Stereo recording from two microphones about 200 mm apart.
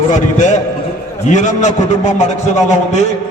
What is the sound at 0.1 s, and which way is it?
A man's voice, 40° left (ahead or behind).